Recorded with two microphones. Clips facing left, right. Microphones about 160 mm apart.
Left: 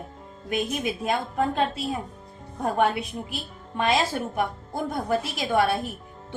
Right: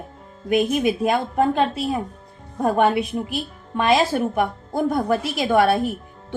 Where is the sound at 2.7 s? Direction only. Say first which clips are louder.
Right 4 dB; 70° right (ahead or behind).